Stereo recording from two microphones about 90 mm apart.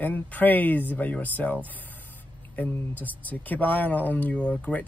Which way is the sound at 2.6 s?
20° left (ahead or behind).